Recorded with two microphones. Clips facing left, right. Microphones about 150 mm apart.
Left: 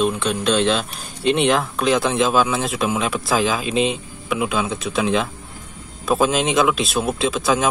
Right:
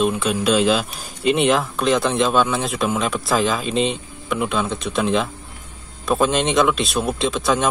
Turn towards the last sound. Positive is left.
turn(degrees=0)  # may be behind; listen again after turning